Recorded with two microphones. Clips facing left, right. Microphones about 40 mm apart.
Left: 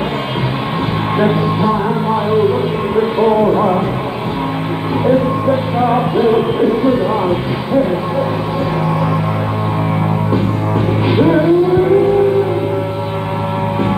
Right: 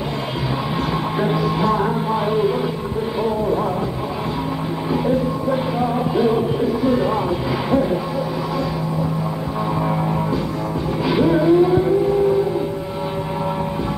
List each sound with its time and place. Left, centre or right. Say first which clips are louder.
1.2 s music: left 5 dB; left
3.0 s a sound: left 10 dB; left
5.0 s music: left 9 dB; left
11.1 s music: left 3 dB; left